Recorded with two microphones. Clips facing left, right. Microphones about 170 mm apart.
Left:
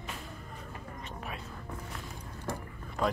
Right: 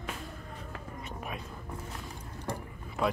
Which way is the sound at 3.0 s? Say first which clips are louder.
Right 1 dB; 5° right (ahead or behind).